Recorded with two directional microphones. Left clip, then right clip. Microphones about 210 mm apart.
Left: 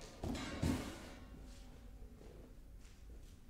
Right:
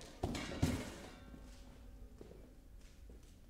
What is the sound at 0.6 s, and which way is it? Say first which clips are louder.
Music: even; 75° right (ahead or behind).